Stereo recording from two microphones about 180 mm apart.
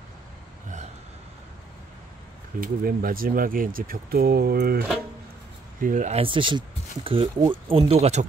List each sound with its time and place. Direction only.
2.6 s speech: 55° right (ahead or behind)
5.8 s speech: 45° right (ahead or behind)